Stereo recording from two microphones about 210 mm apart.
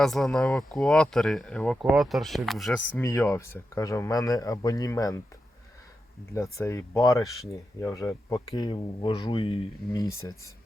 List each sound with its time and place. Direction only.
0.0 s speech: centre (ahead or behind)
6.3 s speech: 15° left (ahead or behind)